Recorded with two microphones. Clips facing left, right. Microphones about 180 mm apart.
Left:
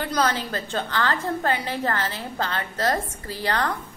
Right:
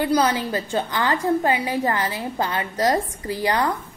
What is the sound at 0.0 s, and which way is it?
A woman's voice, 10° right (ahead or behind).